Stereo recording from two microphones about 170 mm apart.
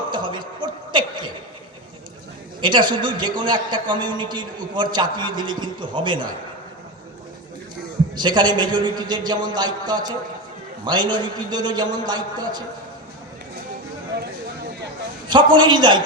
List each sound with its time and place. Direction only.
0.1 s a sound: 30° right (ahead or behind)
2.6 s a man's voice: 25° right (ahead or behind)
8.1 s a man's voice: 25° right (ahead or behind)
15.5 s a man's voice: 25° right (ahead or behind)